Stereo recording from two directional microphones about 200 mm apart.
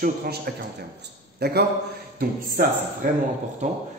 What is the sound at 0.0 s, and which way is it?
Speech, 50° right (ahead or behind).